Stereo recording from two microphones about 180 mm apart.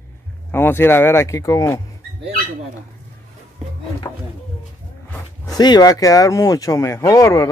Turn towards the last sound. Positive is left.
turn(degrees=20)  # may be behind; listen again after turning